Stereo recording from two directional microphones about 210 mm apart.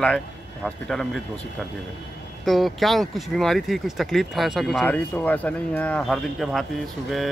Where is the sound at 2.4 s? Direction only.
Centre (ahead or behind).